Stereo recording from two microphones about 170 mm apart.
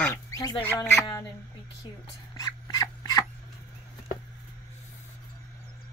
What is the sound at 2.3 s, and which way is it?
Dog, 20° left (ahead or behind).